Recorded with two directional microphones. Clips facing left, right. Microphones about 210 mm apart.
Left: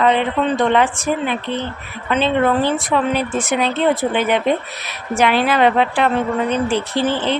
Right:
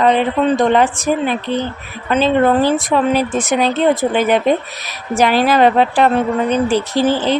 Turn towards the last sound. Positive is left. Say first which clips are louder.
# right 4 dB
turn(degrees=-40)  # may be behind; listen again after turning